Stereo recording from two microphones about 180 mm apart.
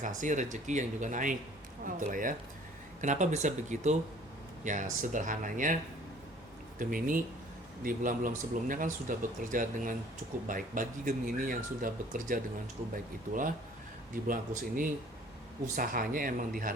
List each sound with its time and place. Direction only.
0.0 s speech: 45° right (ahead or behind)
6.7 s speech: 50° right (ahead or behind)
14.3 s speech: 50° right (ahead or behind)